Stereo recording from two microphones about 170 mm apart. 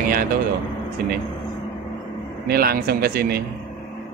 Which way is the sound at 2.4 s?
65° right (ahead or behind).